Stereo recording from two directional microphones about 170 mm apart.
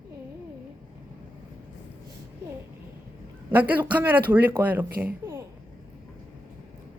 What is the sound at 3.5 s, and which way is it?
Speech, 10° right (ahead or behind).